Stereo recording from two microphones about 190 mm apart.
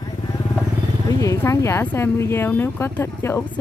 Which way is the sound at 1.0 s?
15° left (ahead or behind).